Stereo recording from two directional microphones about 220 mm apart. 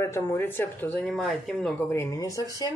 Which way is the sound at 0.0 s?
10° left (ahead or behind).